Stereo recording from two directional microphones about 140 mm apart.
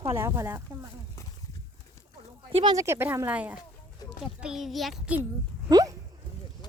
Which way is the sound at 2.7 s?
20° right (ahead or behind).